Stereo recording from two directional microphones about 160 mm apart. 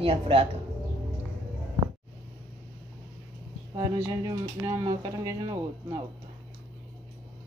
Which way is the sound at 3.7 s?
30° right (ahead or behind).